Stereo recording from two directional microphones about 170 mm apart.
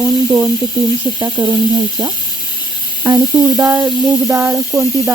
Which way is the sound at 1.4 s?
25° right (ahead or behind).